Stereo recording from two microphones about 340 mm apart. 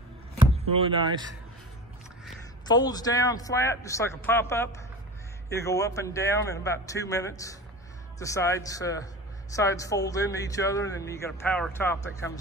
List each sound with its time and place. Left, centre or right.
0.5 s speech: centre
2.6 s speech: centre